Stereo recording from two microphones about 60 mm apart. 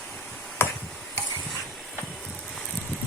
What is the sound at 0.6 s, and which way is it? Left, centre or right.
Tick-tock, left.